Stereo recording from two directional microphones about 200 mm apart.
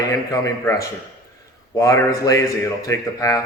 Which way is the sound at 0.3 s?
15° left (ahead or behind).